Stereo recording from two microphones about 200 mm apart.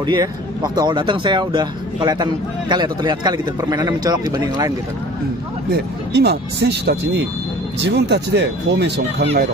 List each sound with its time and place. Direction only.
0.0 s speech: 20° right (ahead or behind)
5.7 s speech: 55° right (ahead or behind)